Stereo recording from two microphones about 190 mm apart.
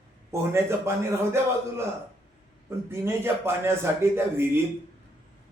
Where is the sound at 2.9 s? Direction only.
15° right (ahead or behind).